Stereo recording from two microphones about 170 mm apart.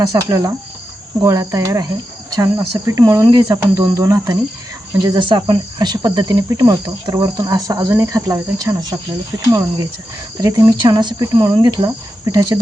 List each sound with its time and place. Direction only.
0.0 s speech: 20° right (ahead or behind)